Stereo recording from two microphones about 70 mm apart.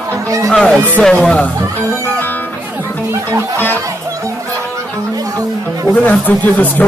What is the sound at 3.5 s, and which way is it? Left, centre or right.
Speech, left.